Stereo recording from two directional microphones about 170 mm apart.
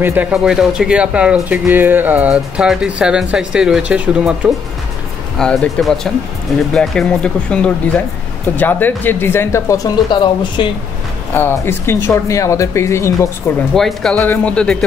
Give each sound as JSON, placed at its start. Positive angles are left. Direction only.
{"t": 0.0, "sound": "speech", "side_deg": -10}
{"t": 5.4, "sound": "speech", "side_deg": 5}
{"t": 11.3, "sound": "speech", "side_deg": 15}
{"t": 13.7, "sound": "speech", "side_deg": 0}